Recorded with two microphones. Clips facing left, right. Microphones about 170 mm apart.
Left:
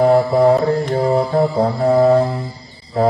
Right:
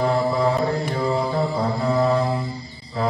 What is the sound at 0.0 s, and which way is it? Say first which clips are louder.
Mantra: left 8 dB; 50° left (ahead or behind).